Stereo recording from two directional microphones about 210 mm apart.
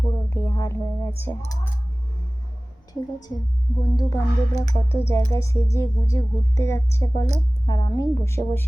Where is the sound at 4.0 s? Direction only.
20° left (ahead or behind).